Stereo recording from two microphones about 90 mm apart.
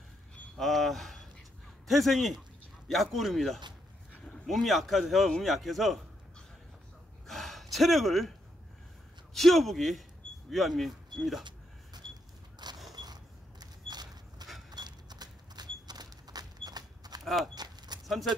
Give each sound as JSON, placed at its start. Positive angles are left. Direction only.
{"t": 0.6, "sound": "a man's voice", "side_deg": 0}
{"t": 7.2, "sound": "gasp", "side_deg": 0}
{"t": 9.3, "sound": "a man's voice", "side_deg": 0}
{"t": 12.9, "sound": "a sound", "side_deg": -50}
{"t": 17.2, "sound": "a sound", "side_deg": 0}
{"t": 17.6, "sound": "keys jangling", "side_deg": -50}